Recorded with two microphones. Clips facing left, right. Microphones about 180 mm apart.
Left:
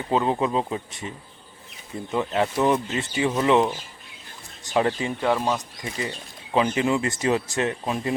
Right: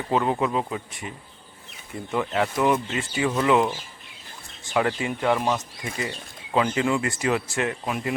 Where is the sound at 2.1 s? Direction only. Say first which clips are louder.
Left 1 dB; 20° left (ahead or behind).